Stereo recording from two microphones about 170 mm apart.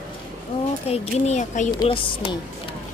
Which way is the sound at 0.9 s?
40° left (ahead or behind).